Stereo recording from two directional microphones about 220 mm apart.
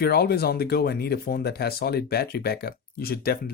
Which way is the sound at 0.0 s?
45° left (ahead or behind).